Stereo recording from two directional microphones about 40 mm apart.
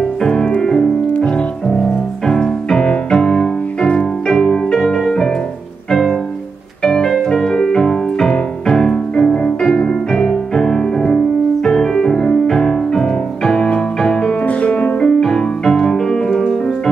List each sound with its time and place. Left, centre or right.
0.2 s music: centre
4.3 s music: centre
15.0 s music: centre